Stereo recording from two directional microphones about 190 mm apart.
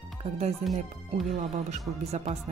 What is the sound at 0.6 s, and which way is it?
Speech, centre (ahead or behind).